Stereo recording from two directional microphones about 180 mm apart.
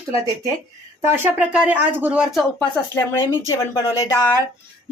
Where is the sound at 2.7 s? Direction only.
20° left (ahead or behind).